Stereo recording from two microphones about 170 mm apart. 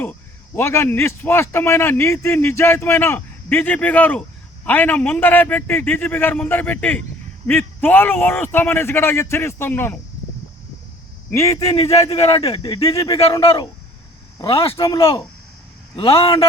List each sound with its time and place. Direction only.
0.0 s a man's voice: 10° left (ahead or behind)
11.3 s a man's voice: 15° left (ahead or behind)
11.9 s speech: 40° left (ahead or behind)
12.6 s speech: 20° left (ahead or behind)
13.4 s speech: 35° left (ahead or behind)
14.8 s speech: 20° left (ahead or behind)